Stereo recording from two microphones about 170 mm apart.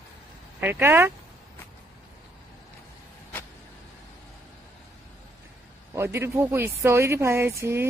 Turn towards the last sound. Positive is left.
turn(degrees=-15)  # may be behind; listen again after turning